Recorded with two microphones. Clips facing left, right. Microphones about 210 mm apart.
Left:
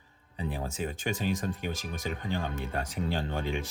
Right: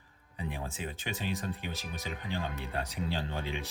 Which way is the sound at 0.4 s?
40° left (ahead or behind).